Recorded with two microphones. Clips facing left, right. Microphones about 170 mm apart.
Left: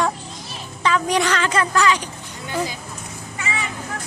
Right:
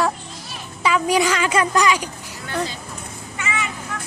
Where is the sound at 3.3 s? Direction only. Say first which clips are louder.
Right 1 dB; 35° left (ahead or behind).